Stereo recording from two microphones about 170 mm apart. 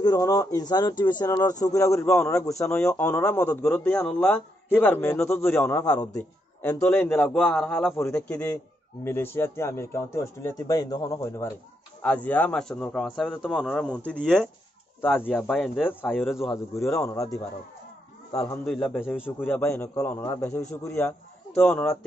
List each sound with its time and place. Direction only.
0.0 s a man's voice: 20° left (ahead or behind)
18.3 s a man's voice: 20° left (ahead or behind)
18.7 s a man's voice: 10° left (ahead or behind)